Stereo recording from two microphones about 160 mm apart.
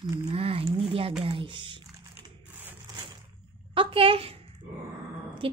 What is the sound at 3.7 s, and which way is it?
Speech, 35° right (ahead or behind).